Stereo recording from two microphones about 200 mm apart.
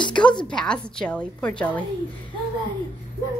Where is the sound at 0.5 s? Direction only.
5° left (ahead or behind).